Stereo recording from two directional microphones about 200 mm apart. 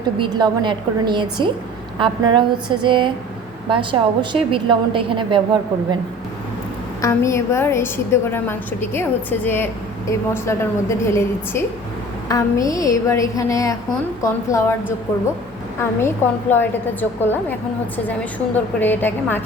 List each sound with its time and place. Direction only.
0.2 s a woman's voice: 20° right (ahead or behind)
7.0 s a woman's voice: 15° left (ahead or behind)
15.8 s a woman's voice: 10° left (ahead or behind)
18.5 s a woman's voice: 10° left (ahead or behind)